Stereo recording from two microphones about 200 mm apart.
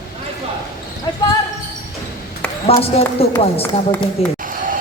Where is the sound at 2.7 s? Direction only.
30° left (ahead or behind).